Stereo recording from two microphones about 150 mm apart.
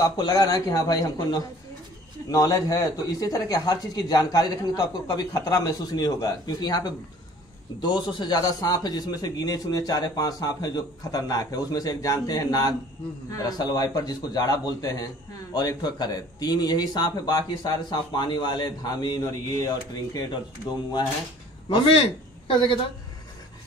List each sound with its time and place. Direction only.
0.0 s a man's voice: 25° left (ahead or behind)
21.6 s a man's voice: 40° left (ahead or behind)